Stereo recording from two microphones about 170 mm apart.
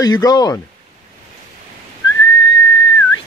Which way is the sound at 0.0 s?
25° left (ahead or behind).